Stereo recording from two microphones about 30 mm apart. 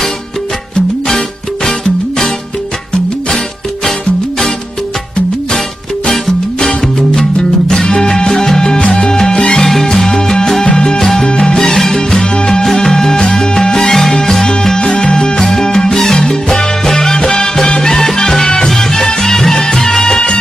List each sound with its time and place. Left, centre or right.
1.6 s music: centre
8.3 s music: centre
9.3 s salsa music: left
9.6 s music: centre; by 11.5 s left
11.5 s music: centre
12.2 s music: left
12.8 s music: centre
13.1 s salsa music: centre
14.1 s music: centre
14.8 s music: left; by 18.4 s centre
18.4 s music: left
18.8 s music: centre